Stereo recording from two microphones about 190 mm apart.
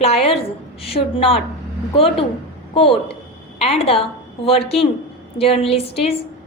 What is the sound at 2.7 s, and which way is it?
A woman's voice, 30° left (ahead or behind).